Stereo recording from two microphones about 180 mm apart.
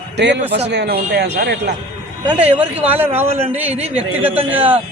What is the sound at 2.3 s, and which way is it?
Speech, 10° right (ahead or behind).